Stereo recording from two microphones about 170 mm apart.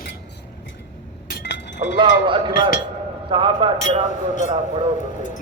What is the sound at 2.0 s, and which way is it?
A man's voice, 30° right (ahead or behind).